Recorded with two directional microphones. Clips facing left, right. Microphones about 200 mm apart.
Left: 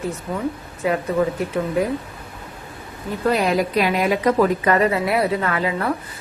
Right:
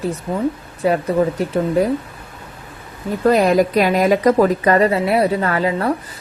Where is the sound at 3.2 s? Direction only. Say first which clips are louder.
Right 6 dB; 45° right (ahead or behind).